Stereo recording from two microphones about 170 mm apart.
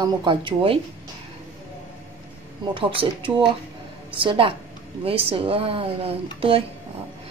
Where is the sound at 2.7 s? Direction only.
30° right (ahead or behind).